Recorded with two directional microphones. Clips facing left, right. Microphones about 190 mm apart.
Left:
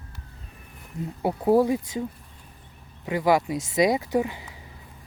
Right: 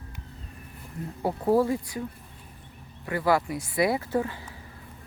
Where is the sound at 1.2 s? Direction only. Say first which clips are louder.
Left 3 dB; 15° left (ahead or behind).